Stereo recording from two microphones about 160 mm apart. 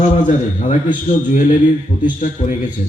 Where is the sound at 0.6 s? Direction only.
50° left (ahead or behind).